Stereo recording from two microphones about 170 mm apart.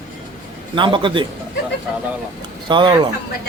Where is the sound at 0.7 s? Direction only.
30° right (ahead or behind).